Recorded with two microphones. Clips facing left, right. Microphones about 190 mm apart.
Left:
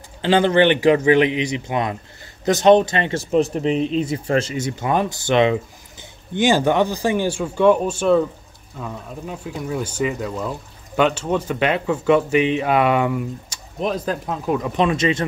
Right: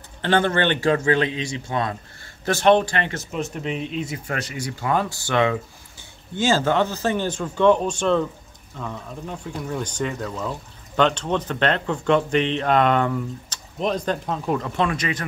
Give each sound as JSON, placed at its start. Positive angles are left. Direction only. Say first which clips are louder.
{"t": 0.2, "sound": "speech", "louder": "left 5 dB", "side_deg": 15}
{"t": 3.3, "sound": "speech", "louder": "left 9 dB", "side_deg": 35}
{"t": 14.7, "sound": "speech", "louder": "left 5 dB", "side_deg": 20}